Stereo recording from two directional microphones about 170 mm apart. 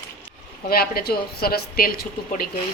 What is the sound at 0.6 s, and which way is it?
A woman's voice, 60° left (ahead or behind).